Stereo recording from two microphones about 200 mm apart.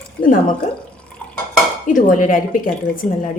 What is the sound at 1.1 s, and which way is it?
Dishes, 5° left (ahead or behind).